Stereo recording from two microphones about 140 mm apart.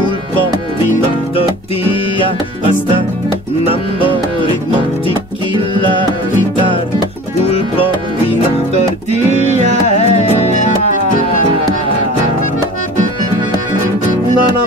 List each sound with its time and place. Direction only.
9.3 s music: 55° right (ahead or behind)
9.9 s music: 55° left (ahead or behind)